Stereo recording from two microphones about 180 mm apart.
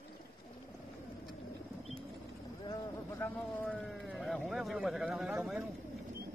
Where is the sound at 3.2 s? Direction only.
10° left (ahead or behind).